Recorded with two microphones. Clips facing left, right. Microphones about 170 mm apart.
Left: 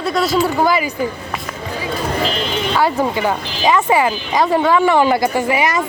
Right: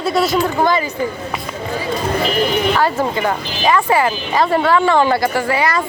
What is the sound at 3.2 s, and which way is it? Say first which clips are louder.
A woman's voice: even; 15° left (ahead or behind).